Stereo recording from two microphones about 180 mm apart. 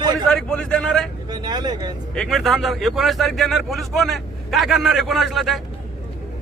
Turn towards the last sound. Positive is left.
turn(degrees=0)  # may be behind; listen again after turning